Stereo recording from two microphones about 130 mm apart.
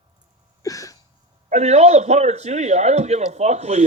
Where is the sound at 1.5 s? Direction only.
60° right (ahead or behind).